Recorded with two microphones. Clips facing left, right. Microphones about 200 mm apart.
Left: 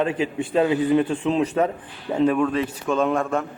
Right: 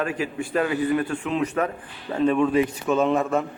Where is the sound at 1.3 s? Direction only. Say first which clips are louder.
Left 2 dB; 30° left (ahead or behind).